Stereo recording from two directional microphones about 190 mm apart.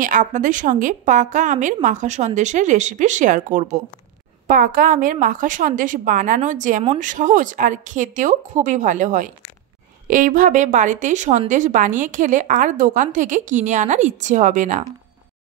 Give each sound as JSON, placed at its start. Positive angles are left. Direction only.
{"t": 0.0, "sound": "a woman's voice", "side_deg": -45}